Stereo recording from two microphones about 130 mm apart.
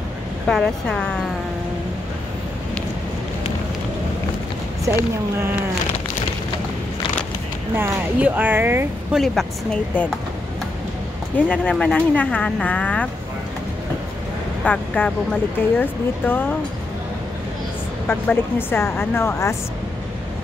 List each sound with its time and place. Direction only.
0.5 s speech: 5° left (ahead or behind)
7.7 s speech: 15° right (ahead or behind)
9.1 s speech: centre (ahead or behind)
11.3 s speech: 10° left (ahead or behind)
14.6 s speech: 10° left (ahead or behind)
18.0 s speech: 15° left (ahead or behind)